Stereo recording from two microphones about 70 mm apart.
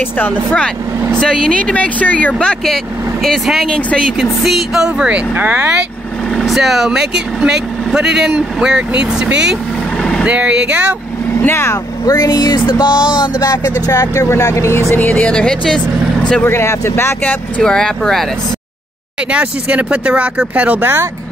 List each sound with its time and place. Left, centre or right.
1.2 s speech: centre
2.6 s speech: centre
4.2 s speech: centre
5.3 s speech: right
6.3 s speech: centre
11.3 s speech: left
11.7 s speech: left
13.2 s speech: left
13.8 s speech: left
15.0 s speech: left
16.4 s speech: left
17.6 s speech: centre
19.3 s speech: centre
20.8 s speech: right